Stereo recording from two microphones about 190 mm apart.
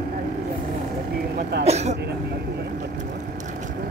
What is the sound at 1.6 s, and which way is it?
Throat clearing, 35° right (ahead or behind).